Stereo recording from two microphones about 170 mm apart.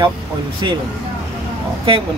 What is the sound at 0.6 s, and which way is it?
Speech, 25° right (ahead or behind).